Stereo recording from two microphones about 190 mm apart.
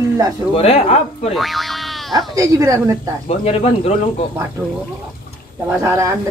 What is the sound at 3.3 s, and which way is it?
Speech, 35° left (ahead or behind).